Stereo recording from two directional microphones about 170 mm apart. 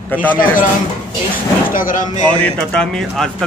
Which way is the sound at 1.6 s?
55° left (ahead or behind).